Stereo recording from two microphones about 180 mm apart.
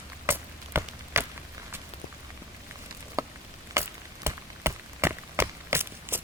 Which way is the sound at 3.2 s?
15° right (ahead or behind).